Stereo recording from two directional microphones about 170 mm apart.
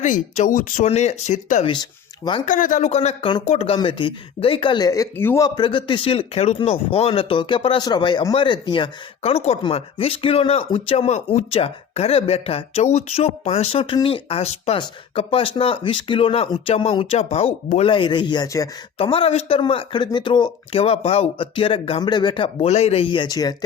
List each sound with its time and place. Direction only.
0.0 s speech: 50° left (ahead or behind)
1.6 s speech: 25° left (ahead or behind)
2.5 s speech: 50° left (ahead or behind); by 5.5 s 15° left (ahead or behind)
5.5 s speech: 30° left (ahead or behind)
18.9 s speech: 30° left (ahead or behind)
22.6 s speech: 40° left (ahead or behind); by 23.6 s 25° left (ahead or behind)